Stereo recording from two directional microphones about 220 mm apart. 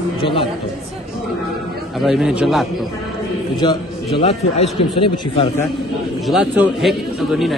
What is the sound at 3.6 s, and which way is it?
Speech, 20° left (ahead or behind).